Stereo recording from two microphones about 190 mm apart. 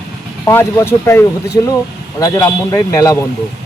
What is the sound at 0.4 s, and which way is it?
Speech, 15° left (ahead or behind).